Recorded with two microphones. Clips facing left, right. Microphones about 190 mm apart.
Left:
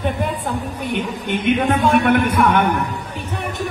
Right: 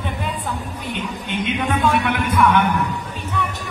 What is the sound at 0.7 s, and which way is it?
A man's voice, 55° left (ahead or behind).